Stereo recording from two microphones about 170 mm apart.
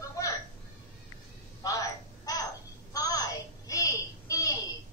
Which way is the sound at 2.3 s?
20° left (ahead or behind).